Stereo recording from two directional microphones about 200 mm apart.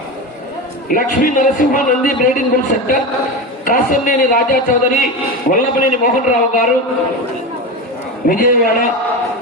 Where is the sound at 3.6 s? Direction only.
45° left (ahead or behind).